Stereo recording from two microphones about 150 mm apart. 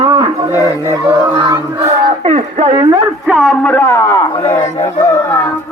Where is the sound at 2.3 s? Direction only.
45° right (ahead or behind).